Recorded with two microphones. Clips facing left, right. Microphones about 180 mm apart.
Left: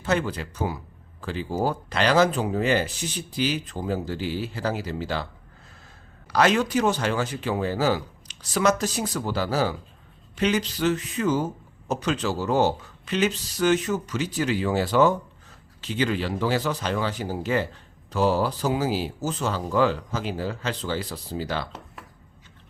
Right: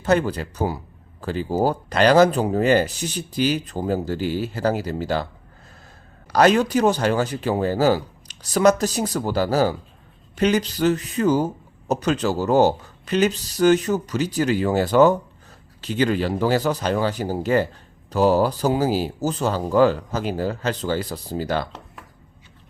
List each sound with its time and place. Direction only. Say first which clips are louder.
0.0 s speech: right 5 dB; 40° right (ahead or behind)